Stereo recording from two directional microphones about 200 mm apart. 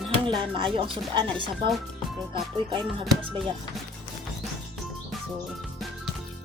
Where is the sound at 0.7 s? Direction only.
25° right (ahead or behind).